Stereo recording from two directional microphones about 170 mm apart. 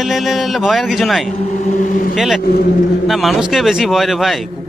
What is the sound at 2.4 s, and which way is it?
Speech, 65° left (ahead or behind).